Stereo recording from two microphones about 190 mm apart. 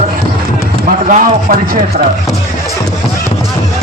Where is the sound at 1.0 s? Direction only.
45° right (ahead or behind).